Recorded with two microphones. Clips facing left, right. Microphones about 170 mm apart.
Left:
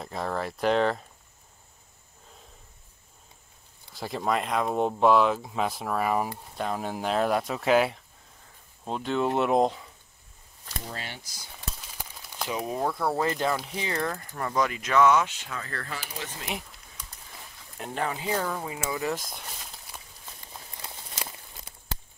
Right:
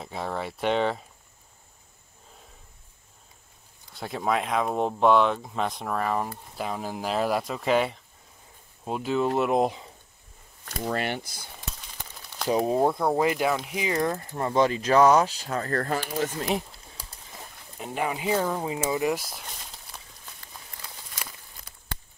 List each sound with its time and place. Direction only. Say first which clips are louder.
0.0 s speech: left 1 dB; centre (ahead or behind)
3.9 s speech: right 1 dB; centre (ahead or behind)
6.5 s speech: left 1 dB; centre (ahead or behind)
10.6 s speech: right 10 dB; 60° right (ahead or behind)
12.0 s a sound: left 1 dB; 10° left (ahead or behind)
12.4 s speech: right 7 dB; 30° right (ahead or behind)
17.7 s speech: right 1 dB; centre (ahead or behind)
18.0 s speech: right 4 dB; 15° right (ahead or behind); by 20.0 s centre (ahead or behind)
20.3 s a sound: left 3 dB; 25° left (ahead or behind)